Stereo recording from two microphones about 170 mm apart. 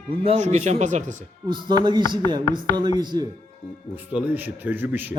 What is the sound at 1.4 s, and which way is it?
A man's voice, 25° right (ahead or behind).